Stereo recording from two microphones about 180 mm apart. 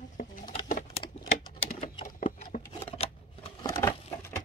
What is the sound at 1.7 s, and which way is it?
Typing, 35° left (ahead or behind).